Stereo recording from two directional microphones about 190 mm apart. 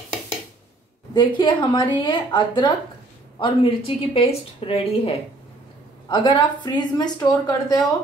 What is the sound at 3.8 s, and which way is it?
A woman's voice, 30° left (ahead or behind).